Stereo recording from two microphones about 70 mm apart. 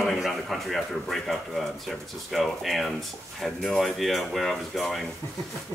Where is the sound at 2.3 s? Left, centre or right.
Centre.